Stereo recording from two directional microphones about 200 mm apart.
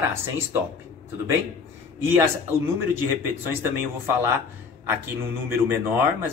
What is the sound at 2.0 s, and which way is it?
Speech, 10° right (ahead or behind).